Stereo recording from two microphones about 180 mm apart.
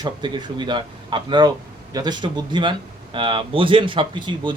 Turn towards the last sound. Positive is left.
turn(degrees=-25)  # may be behind; listen again after turning